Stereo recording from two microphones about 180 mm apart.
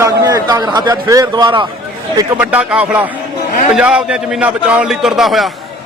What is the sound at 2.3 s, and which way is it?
A man's voice, 10° right (ahead or behind).